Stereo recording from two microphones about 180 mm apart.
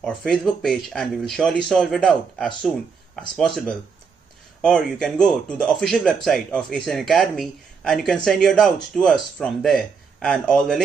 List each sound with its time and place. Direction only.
0.0 s a man's voice: 5° left (ahead or behind)